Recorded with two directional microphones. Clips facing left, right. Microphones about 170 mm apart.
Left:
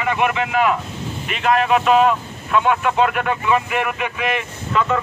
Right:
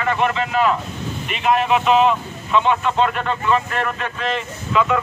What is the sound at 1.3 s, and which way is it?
Speech, centre (ahead or behind).